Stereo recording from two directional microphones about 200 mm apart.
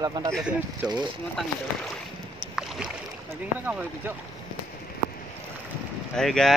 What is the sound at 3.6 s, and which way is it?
Speech, 10° right (ahead or behind).